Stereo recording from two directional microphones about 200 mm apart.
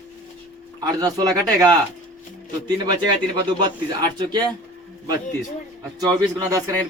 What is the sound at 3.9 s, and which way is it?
Speech, 20° right (ahead or behind).